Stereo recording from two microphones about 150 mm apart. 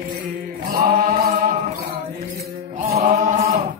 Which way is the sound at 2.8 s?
45° right (ahead or behind).